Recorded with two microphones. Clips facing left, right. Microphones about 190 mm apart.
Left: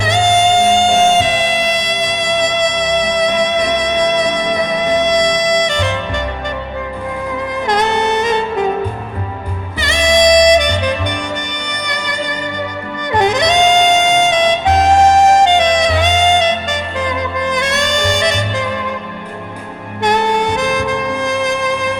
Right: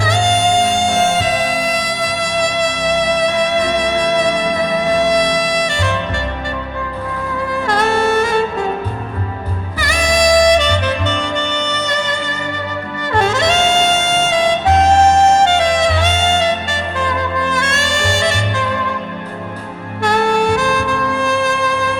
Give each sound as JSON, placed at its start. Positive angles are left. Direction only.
{"t": 0.0, "sound": "music", "side_deg": 20}
{"t": 7.7, "sound": "saxophone", "side_deg": 20}
{"t": 9.8, "sound": "music", "side_deg": 25}
{"t": 13.1, "sound": "music", "side_deg": 15}
{"t": 17.0, "sound": "saxophone", "side_deg": 20}
{"t": 20.0, "sound": "saxophone", "side_deg": 20}